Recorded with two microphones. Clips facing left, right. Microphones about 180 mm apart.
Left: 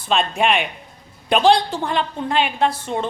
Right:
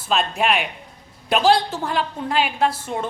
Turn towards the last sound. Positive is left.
turn(degrees=-5)  # may be behind; listen again after turning